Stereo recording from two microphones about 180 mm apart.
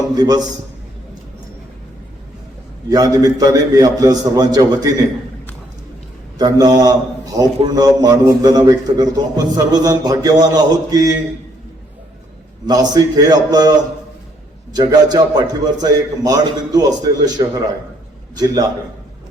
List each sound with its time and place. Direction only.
0.1 s a man's voice: 20° right (ahead or behind)
2.9 s a man's voice: 20° right (ahead or behind)
6.4 s a man's voice: 20° right (ahead or behind)
12.6 s a man's voice: 20° right (ahead or behind)